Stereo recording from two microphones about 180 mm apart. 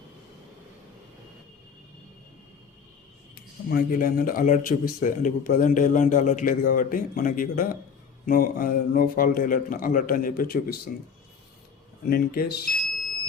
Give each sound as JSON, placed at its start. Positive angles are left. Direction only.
{"t": 3.7, "sound": "speech", "side_deg": 55}
{"t": 12.0, "sound": "speech", "side_deg": 55}